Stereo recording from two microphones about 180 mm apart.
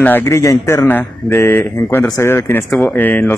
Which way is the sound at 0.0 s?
10° left (ahead or behind).